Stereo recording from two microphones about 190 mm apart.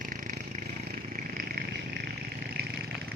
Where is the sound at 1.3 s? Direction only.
50° right (ahead or behind).